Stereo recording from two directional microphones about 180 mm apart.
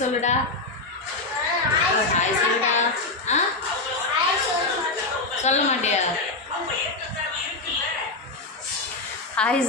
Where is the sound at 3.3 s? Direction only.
40° left (ahead or behind).